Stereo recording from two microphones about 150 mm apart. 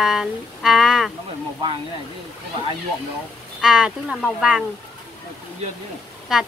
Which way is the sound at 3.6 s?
5° right (ahead or behind).